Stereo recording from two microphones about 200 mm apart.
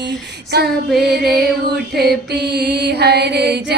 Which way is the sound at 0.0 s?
60° right (ahead or behind).